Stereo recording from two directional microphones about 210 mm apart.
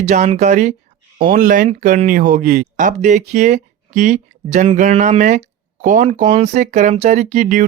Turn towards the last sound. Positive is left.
turn(degrees=-35)  # may be behind; listen again after turning